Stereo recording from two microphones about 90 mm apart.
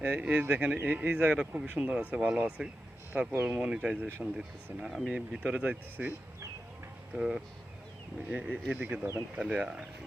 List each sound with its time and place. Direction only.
0.0 s speech: 20° right (ahead or behind)
7.2 s speech: 5° right (ahead or behind); by 9.2 s 25° right (ahead or behind)
9.3 s speech: 10° right (ahead or behind)